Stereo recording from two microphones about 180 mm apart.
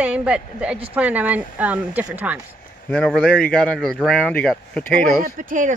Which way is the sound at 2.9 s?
5° left (ahead or behind).